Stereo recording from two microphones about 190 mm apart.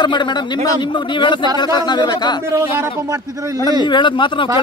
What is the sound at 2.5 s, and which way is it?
A man's voice, 15° right (ahead or behind).